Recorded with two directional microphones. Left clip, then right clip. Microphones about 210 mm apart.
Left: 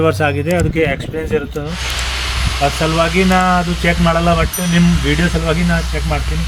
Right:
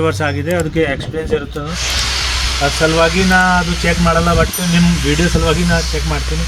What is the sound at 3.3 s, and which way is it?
Speech, 20° left (ahead or behind).